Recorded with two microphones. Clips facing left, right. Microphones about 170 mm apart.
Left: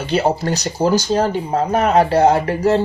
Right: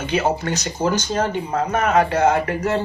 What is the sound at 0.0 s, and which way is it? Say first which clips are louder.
Speech: left 3 dB; 30° left (ahead or behind).